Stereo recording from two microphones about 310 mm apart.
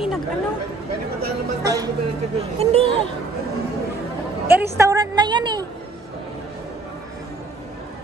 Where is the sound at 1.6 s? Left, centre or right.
Centre.